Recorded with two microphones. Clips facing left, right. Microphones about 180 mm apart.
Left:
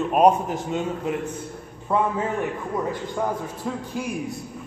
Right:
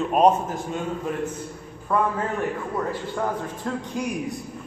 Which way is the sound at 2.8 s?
10° left (ahead or behind).